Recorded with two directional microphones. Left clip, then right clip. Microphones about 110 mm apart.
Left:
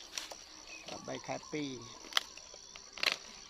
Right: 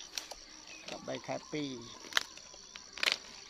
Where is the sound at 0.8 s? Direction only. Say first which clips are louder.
Right 2 dB; 35° right (ahead or behind).